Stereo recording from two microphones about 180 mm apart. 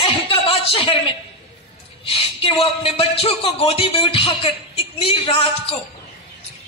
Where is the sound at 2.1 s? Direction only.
30° left (ahead or behind).